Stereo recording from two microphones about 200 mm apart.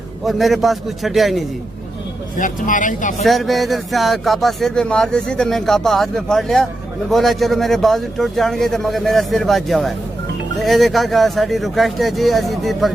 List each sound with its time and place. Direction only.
0.3 s speech: centre (ahead or behind)
2.4 s speech: 40° left (ahead or behind)
3.2 s speech: centre (ahead or behind)